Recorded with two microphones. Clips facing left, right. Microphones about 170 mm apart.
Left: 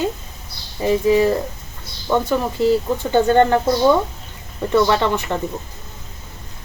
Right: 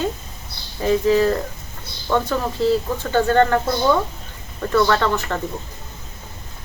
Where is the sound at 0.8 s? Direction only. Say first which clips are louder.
Left 1 dB; 15° left (ahead or behind).